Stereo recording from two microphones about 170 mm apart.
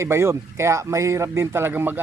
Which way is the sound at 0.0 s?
15° right (ahead or behind).